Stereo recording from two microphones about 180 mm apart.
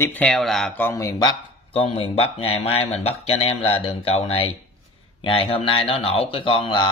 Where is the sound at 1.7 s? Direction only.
30° left (ahead or behind).